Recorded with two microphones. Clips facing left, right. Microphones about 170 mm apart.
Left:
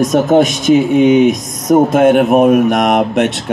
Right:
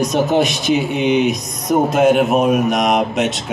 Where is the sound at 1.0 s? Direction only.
45° left (ahead or behind).